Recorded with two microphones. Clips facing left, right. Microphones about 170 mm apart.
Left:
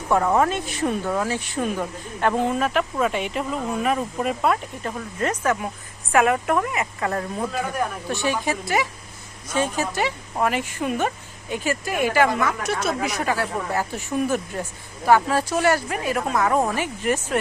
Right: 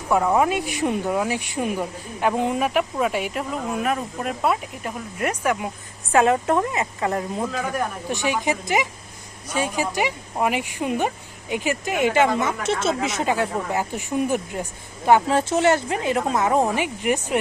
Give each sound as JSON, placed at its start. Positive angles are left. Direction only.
{"t": 0.1, "sound": "speech", "side_deg": -10}
{"t": 4.8, "sound": "speech", "side_deg": -10}